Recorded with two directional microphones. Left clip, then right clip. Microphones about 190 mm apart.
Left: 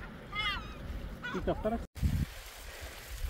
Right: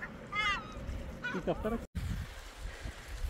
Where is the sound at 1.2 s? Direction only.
25° right (ahead or behind).